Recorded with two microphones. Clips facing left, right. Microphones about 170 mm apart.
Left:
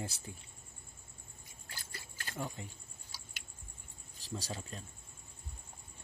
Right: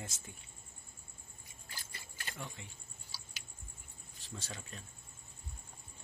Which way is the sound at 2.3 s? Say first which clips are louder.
Left 6 dB; 40° left (ahead or behind).